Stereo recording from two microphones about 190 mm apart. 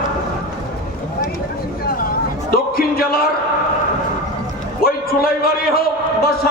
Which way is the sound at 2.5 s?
55° left (ahead or behind).